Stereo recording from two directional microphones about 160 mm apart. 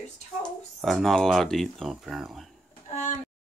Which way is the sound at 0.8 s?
Centre (ahead or behind).